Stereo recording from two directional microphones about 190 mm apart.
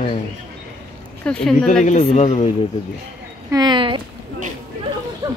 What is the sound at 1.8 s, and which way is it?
Speech, 35° left (ahead or behind).